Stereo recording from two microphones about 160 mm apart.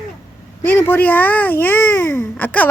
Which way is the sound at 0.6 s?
10° left (ahead or behind).